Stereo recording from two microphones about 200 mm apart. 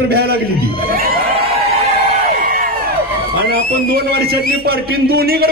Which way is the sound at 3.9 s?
50° right (ahead or behind).